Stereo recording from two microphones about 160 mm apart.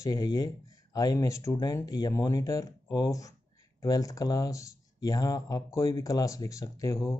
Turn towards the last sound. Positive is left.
turn(degrees=20)  # may be behind; listen again after turning